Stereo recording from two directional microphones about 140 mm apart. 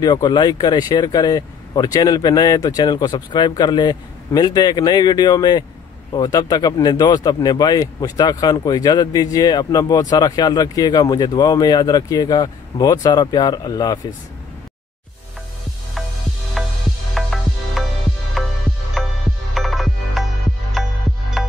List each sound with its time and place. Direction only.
0.0 s speech: 30° left (ahead or behind)
16.6 s music: centre (ahead or behind)